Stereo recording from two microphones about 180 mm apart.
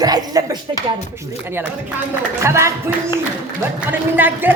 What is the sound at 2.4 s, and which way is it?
Speech, 15° right (ahead or behind).